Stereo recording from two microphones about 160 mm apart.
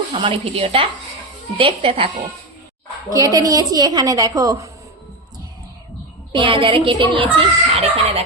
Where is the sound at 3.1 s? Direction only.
20° right (ahead or behind).